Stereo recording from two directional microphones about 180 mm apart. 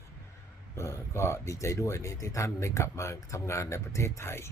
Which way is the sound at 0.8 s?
15° left (ahead or behind).